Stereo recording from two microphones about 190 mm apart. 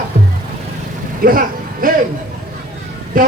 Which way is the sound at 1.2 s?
50° right (ahead or behind).